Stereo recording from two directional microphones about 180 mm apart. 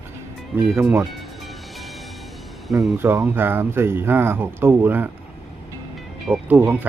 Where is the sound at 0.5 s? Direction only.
10° right (ahead or behind).